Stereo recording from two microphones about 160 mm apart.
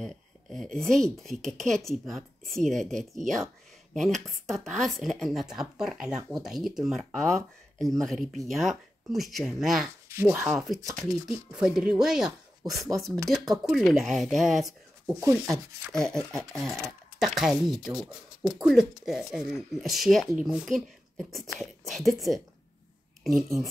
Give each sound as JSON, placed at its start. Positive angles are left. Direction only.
{"t": 0.0, "sound": "a sound", "side_deg": 0}
{"t": 0.7, "sound": "speech", "side_deg": 5}
{"t": 10.0, "sound": "speech", "side_deg": -15}
{"t": 10.5, "sound": "speech", "side_deg": 0}
{"t": 15.0, "sound": "speech", "side_deg": -20}
{"t": 16.0, "sound": "speech", "side_deg": 5}